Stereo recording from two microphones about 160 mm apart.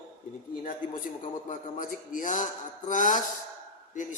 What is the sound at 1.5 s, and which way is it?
A man's voice, 55° left (ahead or behind).